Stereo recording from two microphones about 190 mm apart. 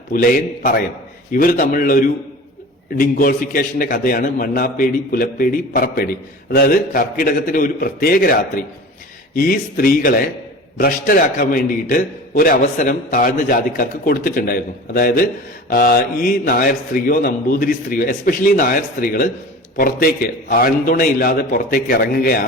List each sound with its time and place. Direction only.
0.1 s a man's voice: 50° left (ahead or behind)